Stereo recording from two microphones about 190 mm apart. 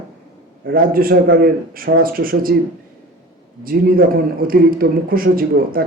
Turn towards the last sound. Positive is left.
turn(degrees=-50)  # may be behind; listen again after turning